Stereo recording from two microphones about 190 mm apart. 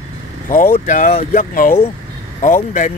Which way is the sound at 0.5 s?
45° left (ahead or behind).